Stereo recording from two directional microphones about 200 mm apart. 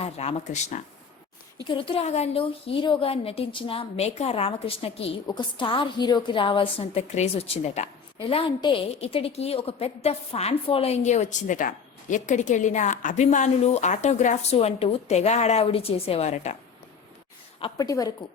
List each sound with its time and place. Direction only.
0.0 s a woman's voice: 30° left (ahead or behind)
1.6 s a woman's voice: 25° left (ahead or behind)
17.6 s a woman's voice: 20° left (ahead or behind)